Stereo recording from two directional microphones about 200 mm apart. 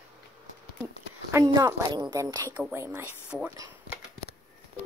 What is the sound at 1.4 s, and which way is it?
A woman's voice, 20° right (ahead or behind).